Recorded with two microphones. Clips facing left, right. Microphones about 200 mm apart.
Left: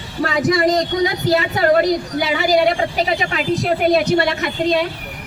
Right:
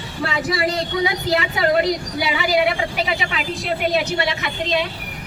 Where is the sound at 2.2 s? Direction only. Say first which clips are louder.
Left 3 dB; 45° left (ahead or behind).